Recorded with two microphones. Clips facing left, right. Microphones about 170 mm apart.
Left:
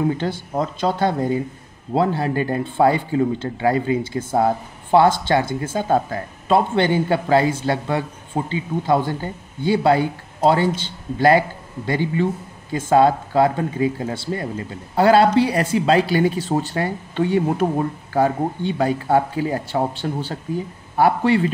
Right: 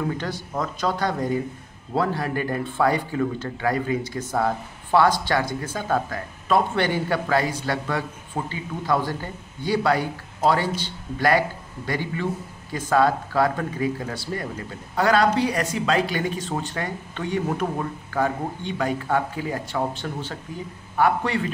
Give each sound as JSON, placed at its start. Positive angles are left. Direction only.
{"t": 0.2, "sound": "speech", "side_deg": 25}